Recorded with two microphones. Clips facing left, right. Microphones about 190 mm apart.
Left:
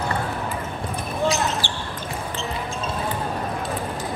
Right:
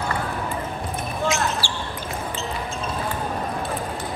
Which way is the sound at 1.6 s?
20° left (ahead or behind).